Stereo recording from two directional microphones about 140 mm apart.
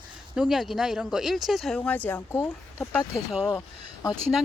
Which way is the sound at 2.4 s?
5° left (ahead or behind).